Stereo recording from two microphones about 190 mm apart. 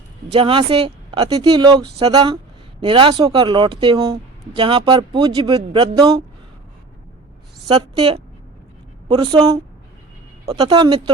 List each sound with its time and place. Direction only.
0.3 s speech: 30° right (ahead or behind)
7.7 s speech: 25° right (ahead or behind)